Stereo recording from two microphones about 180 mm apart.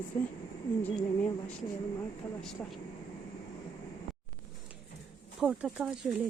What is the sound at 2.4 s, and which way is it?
Speech, centre (ahead or behind).